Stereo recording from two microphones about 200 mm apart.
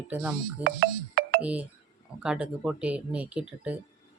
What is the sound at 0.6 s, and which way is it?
Music, 50° right (ahead or behind).